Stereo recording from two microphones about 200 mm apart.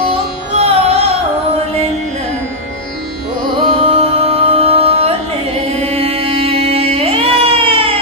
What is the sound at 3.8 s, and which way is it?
Music, 30° right (ahead or behind).